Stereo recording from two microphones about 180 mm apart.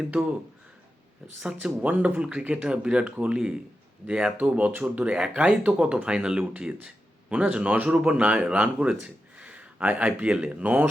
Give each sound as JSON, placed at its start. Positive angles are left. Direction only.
{"t": 0.0, "sound": "speech", "side_deg": -10}
{"t": 1.4, "sound": "speech", "side_deg": -5}